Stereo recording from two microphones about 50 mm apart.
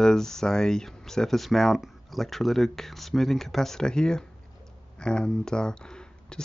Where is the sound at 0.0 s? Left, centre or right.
Centre.